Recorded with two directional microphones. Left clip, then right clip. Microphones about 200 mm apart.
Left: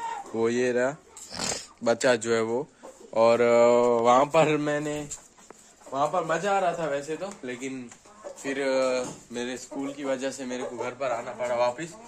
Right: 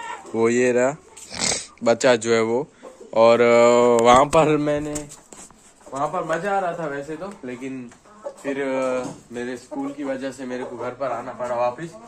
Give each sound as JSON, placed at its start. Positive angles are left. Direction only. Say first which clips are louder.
{"t": 0.4, "sound": "speech", "louder": "right 7 dB", "side_deg": -5}
{"t": 5.9, "sound": "a man's voice", "louder": "right 2 dB", "side_deg": 35}
{"t": 6.9, "sound": "speech", "louder": "right 1 dB", "side_deg": 10}